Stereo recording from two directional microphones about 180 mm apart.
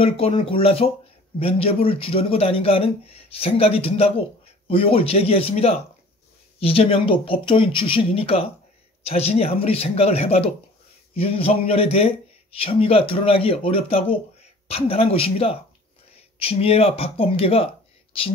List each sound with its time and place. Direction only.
0.0 s a man's voice: 30° left (ahead or behind)